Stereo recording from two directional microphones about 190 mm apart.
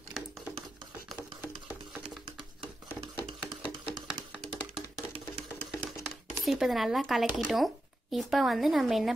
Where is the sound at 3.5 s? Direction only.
25° right (ahead or behind).